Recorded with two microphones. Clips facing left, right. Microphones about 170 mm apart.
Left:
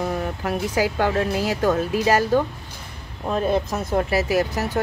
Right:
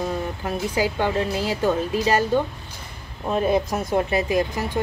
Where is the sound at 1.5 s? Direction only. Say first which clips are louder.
Even; 10° right (ahead or behind).